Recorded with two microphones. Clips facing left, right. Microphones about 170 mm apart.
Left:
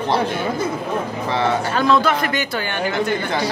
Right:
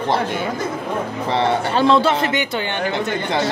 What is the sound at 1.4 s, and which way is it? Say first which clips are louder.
Speech: right 2 dB; 30° right (ahead or behind).